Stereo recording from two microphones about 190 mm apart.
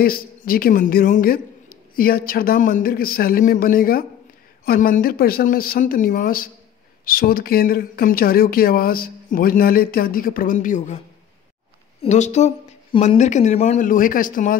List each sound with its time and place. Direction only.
0.0 s speech: 50° left (ahead or behind)
12.0 s speech: 35° left (ahead or behind)